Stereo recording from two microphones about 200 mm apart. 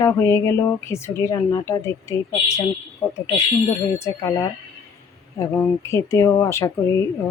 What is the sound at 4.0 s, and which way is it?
Speech, 15° left (ahead or behind).